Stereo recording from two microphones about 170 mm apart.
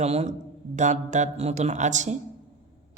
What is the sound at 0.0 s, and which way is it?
A woman's voice, 40° right (ahead or behind).